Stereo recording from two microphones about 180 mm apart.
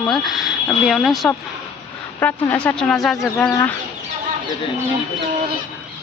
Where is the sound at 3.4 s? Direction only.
15° left (ahead or behind).